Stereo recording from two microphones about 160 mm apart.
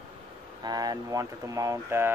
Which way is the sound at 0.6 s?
25° right (ahead or behind).